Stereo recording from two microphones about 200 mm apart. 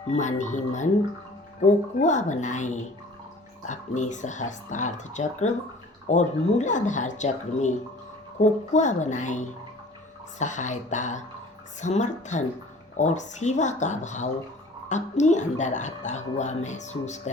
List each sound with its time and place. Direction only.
0.1 s a woman's voice: 35° left (ahead or behind)